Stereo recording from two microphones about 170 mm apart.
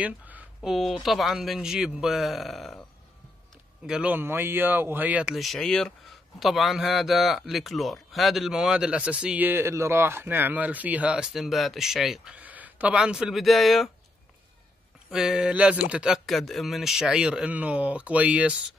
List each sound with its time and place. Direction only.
0.0 s a sound: 10° right (ahead or behind)
0.6 s a man's voice: centre (ahead or behind)
3.8 s a man's voice: 5° right (ahead or behind)
15.0 s a man's voice: 5° right (ahead or behind)